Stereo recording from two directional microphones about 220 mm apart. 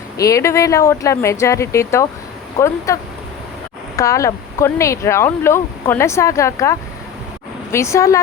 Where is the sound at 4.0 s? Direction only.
15° left (ahead or behind).